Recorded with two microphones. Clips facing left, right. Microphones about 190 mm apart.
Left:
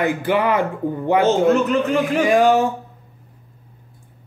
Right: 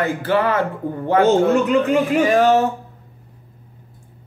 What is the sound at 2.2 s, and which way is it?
Speech, 15° left (ahead or behind).